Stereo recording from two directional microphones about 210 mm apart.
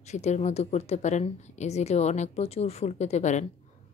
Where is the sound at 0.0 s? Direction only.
35° left (ahead or behind).